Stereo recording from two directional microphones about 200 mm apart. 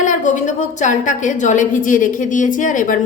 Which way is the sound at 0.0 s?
40° left (ahead or behind).